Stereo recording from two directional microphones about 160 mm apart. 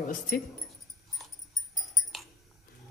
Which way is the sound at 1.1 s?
Centre (ahead or behind).